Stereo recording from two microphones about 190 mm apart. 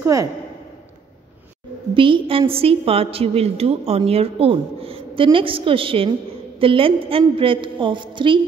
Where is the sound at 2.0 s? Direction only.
25° right (ahead or behind).